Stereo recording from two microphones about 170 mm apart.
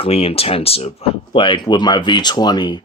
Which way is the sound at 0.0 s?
35° left (ahead or behind).